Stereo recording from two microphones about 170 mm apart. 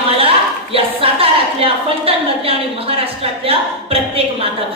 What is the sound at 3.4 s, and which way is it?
Speech, 35° right (ahead or behind).